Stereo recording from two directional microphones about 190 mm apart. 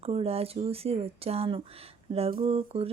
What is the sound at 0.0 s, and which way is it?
Speech, 30° right (ahead or behind).